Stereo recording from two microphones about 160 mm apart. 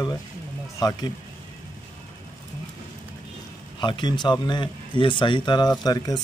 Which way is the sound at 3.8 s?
30° left (ahead or behind).